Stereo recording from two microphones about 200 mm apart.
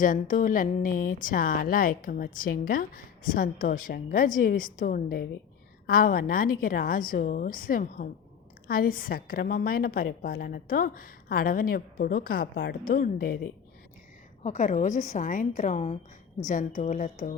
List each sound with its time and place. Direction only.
0.0 s a woman's voice: 40° left (ahead or behind)
14.4 s a woman's voice: 35° left (ahead or behind)